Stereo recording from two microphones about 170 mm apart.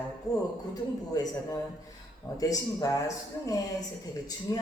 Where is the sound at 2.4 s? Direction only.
20° left (ahead or behind).